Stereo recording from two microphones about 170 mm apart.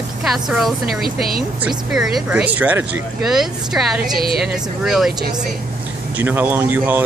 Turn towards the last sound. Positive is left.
turn(degrees=-10)  # may be behind; listen again after turning